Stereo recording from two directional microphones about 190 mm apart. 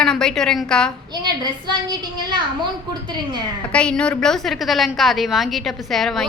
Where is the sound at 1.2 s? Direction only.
25° right (ahead or behind).